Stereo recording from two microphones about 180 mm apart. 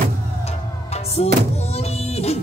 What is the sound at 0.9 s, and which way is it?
Music, 35° left (ahead or behind).